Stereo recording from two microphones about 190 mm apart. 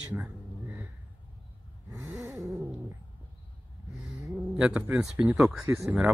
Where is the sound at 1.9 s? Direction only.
15° right (ahead or behind).